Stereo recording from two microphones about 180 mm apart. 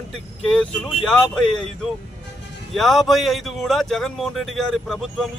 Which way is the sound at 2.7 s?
Centre (ahead or behind).